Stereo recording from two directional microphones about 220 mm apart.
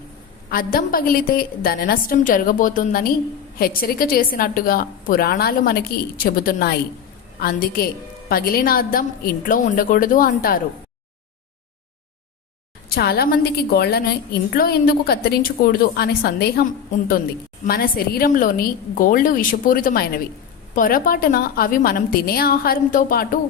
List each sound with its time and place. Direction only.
0.5 s a woman's voice: 40° left (ahead or behind)
12.9 s a woman's voice: 45° left (ahead or behind)
17.7 s a woman's voice: 40° left (ahead or behind)